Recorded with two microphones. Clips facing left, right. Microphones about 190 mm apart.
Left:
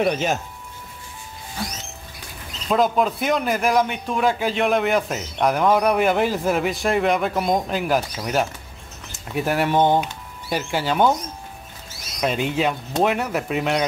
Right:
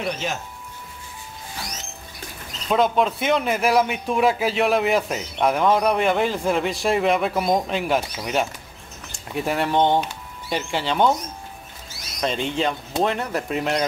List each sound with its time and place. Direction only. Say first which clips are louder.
0.0 s speech: left 6 dB; 50° left (ahead or behind)
2.7 s a man's voice: even; centre (ahead or behind)
12.2 s a man's voice: left 2 dB; 5° left (ahead or behind)